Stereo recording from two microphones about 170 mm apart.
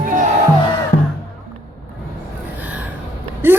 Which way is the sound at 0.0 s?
50° right (ahead or behind).